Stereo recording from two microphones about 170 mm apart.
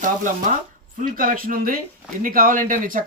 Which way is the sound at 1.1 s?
55° right (ahead or behind).